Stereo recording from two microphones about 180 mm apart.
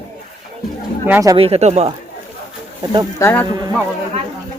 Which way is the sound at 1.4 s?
35° right (ahead or behind).